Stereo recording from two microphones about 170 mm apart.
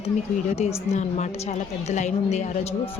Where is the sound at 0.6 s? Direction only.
40° left (ahead or behind).